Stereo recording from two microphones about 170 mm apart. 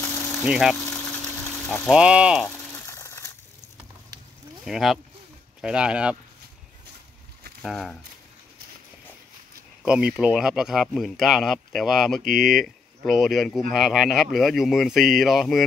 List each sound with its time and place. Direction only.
0.4 s speech: centre (ahead or behind)
2.9 s a sound: 15° left (ahead or behind)
4.6 s speech: 5° right (ahead or behind)
7.6 s speech: centre (ahead or behind)
9.8 s speech: 5° right (ahead or behind)